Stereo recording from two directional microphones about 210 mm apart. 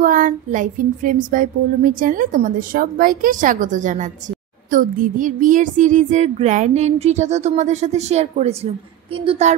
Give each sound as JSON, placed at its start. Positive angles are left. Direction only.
{"t": 0.0, "sound": "a woman's voice", "side_deg": -40}